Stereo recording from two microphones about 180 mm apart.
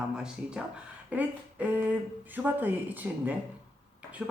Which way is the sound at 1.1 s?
10° right (ahead or behind).